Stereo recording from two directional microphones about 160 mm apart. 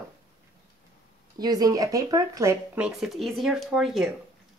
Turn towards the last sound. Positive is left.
turn(degrees=0)  # may be behind; listen again after turning